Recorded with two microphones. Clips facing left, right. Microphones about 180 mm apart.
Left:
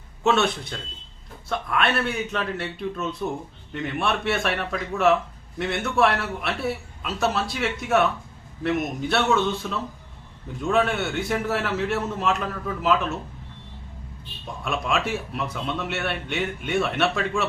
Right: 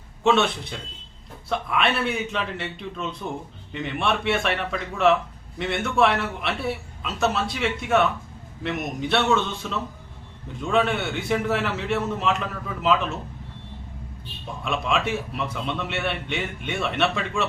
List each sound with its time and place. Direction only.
0.3 s a man's voice: centre (ahead or behind)
14.6 s a man's voice: 5° left (ahead or behind)